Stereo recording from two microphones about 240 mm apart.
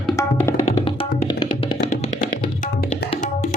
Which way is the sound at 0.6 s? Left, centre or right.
Left.